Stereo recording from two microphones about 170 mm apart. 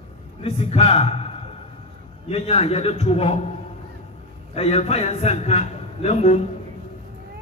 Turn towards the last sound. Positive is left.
turn(degrees=40)  # may be behind; listen again after turning